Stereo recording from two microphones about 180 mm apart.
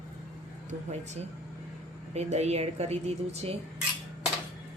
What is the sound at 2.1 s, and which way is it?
A woman's voice, 35° right (ahead or behind).